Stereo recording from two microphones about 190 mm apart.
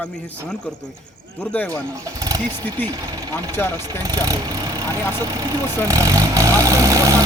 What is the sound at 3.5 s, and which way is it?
Speech, 10° left (ahead or behind).